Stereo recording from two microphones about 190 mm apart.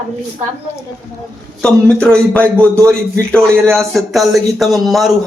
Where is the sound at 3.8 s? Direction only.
Centre (ahead or behind).